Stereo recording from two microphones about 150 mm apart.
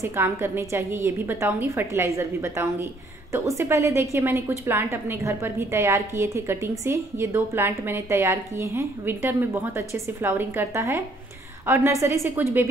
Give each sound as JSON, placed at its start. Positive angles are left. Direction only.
{"t": 0.0, "sound": "a woman's voice", "side_deg": -15}